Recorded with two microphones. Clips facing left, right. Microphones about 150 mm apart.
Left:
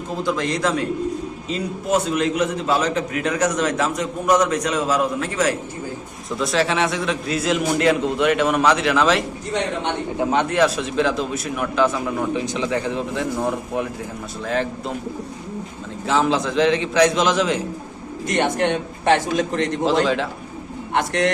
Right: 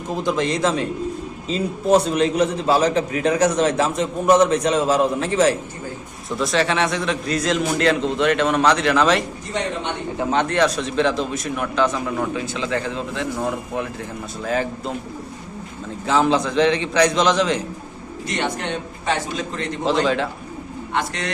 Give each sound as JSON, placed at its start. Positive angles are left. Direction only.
{"t": 0.2, "sound": "a man's voice", "side_deg": -20}
{"t": 6.4, "sound": "a man's voice", "side_deg": 0}
{"t": 12.3, "sound": "a man's voice", "side_deg": 20}
{"t": 14.4, "sound": "a man's voice", "side_deg": -5}
{"t": 16.0, "sound": "a man's voice", "side_deg": 0}
{"t": 18.3, "sound": "a man's voice", "side_deg": 55}
{"t": 19.8, "sound": "a man's voice", "side_deg": 0}
{"t": 20.9, "sound": "a man's voice", "side_deg": 55}